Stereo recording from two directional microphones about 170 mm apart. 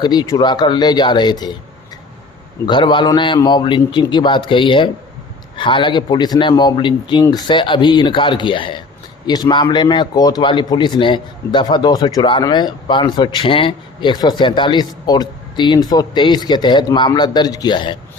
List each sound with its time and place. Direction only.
0.0 s a man's voice: 25° left (ahead or behind)
2.6 s a man's voice: 30° left (ahead or behind)